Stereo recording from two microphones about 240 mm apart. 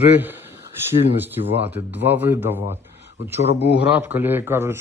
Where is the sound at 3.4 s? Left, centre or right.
Left.